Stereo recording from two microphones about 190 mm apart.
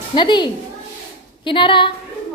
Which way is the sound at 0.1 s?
25° left (ahead or behind).